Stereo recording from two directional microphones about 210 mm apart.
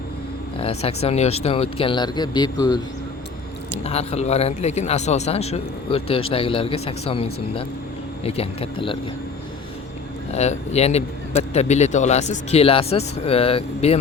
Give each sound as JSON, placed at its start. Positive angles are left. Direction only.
{"t": 0.6, "sound": "a man's voice", "side_deg": 30}
{"t": 3.8, "sound": "a man's voice", "side_deg": 30}
{"t": 10.3, "sound": "speech", "side_deg": 30}